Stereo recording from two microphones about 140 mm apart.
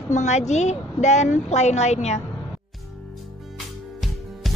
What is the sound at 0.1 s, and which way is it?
Speech, 55° left (ahead or behind).